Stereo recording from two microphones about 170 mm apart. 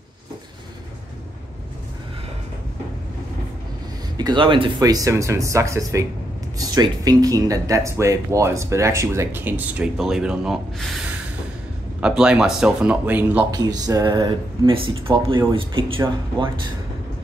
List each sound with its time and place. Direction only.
4.2 s speech: 25° right (ahead or behind); by 11.0 s 5° right (ahead or behind)
12.0 s speech: 5° right (ahead or behind)
13.5 s speech: 20° right (ahead or behind)